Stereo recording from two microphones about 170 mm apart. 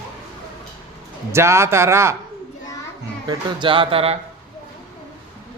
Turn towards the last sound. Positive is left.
turn(degrees=-35)  # may be behind; listen again after turning